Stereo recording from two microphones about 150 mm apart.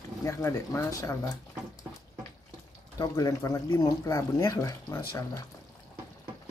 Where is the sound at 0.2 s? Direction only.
20° left (ahead or behind).